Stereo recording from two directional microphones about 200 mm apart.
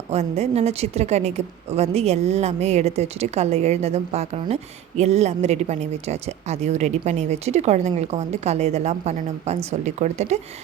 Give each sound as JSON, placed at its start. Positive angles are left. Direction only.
{"t": 0.1, "sound": "a woman's voice", "side_deg": -30}